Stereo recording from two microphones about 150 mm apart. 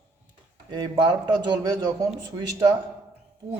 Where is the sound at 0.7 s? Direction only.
30° right (ahead or behind).